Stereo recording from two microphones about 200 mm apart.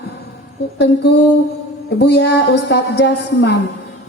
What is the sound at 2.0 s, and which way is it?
A woman's voice, 55° left (ahead or behind).